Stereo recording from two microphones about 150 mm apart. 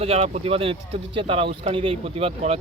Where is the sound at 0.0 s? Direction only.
40° right (ahead or behind).